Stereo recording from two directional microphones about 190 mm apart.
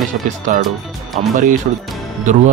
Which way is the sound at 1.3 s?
45° right (ahead or behind).